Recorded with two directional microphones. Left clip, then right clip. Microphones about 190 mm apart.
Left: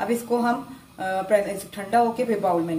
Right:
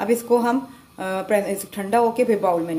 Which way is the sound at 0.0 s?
40° right (ahead or behind).